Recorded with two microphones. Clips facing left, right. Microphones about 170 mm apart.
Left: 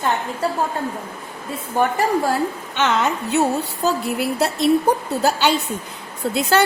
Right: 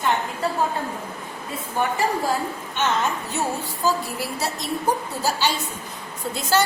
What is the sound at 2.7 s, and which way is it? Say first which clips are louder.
A woman's voice: left 3 dB; 70° left (ahead or behind).